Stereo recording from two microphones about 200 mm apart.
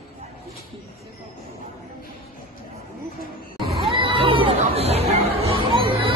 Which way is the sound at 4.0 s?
30° right (ahead or behind).